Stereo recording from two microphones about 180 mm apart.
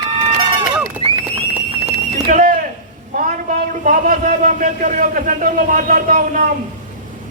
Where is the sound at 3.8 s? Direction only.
45° right (ahead or behind).